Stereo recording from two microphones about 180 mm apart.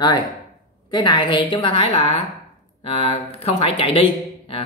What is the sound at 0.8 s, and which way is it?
Speech, 25° left (ahead or behind).